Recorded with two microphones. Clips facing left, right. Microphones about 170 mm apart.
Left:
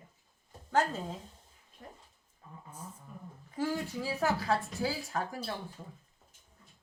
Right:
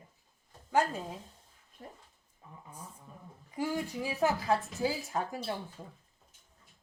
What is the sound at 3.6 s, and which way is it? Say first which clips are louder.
A woman's voice: even; 15° right (ahead or behind).